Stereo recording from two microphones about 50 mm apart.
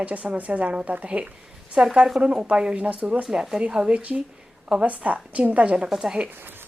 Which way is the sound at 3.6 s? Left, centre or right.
Centre.